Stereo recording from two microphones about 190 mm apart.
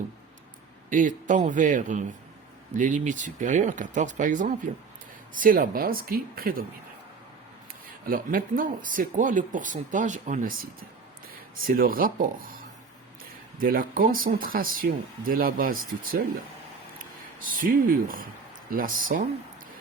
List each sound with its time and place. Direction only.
0.9 s speech: 45° right (ahead or behind)
8.0 s speech: 50° right (ahead or behind)
17.4 s speech: 45° right (ahead or behind)